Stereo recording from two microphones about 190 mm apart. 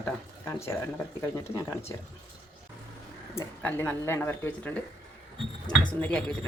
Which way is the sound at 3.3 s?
10° left (ahead or behind).